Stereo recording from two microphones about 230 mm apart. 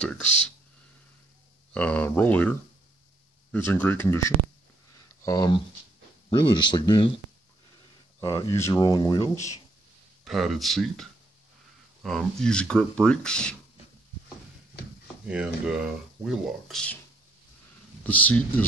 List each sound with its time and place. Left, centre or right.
1.7 s speech: centre
8.2 s speech: centre
10.2 s speech: centre
15.2 s speech: centre
18.0 s speech: centre